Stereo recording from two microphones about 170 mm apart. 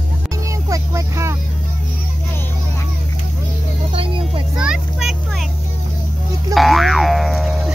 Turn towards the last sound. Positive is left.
turn(degrees=0)  # may be behind; listen again after turning